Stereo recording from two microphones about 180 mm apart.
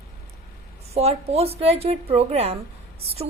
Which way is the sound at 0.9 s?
35° right (ahead or behind).